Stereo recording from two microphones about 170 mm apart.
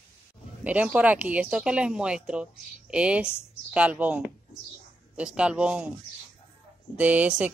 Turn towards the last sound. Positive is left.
turn(degrees=-10)  # may be behind; listen again after turning